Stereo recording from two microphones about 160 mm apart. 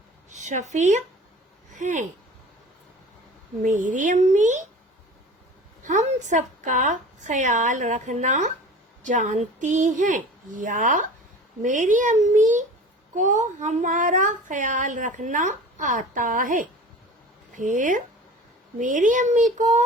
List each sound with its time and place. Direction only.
0.3 s speech: 50° right (ahead or behind)
3.6 s a woman's voice: 50° right (ahead or behind)
5.8 s a woman's voice: 50° right (ahead or behind)